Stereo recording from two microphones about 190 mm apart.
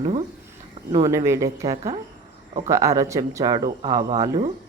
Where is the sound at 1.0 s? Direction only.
15° right (ahead or behind).